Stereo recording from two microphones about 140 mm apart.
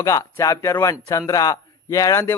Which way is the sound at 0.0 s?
25° left (ahead or behind).